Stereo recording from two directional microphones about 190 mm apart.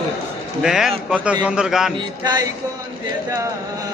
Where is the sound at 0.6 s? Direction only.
Centre (ahead or behind).